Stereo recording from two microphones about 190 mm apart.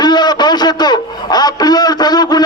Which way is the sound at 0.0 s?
20° left (ahead or behind).